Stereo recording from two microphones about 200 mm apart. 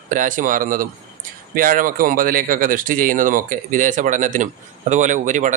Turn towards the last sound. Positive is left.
turn(degrees=-40)  # may be behind; listen again after turning